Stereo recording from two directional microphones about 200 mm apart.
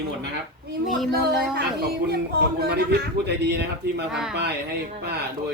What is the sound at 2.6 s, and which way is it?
A man's voice, 55° right (ahead or behind).